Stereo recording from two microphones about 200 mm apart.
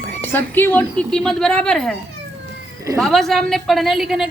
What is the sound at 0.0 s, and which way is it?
Speech, 10° left (ahead or behind).